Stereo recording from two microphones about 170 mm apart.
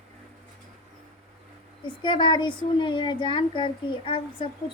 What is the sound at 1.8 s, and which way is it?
A child's voice, 30° left (ahead or behind).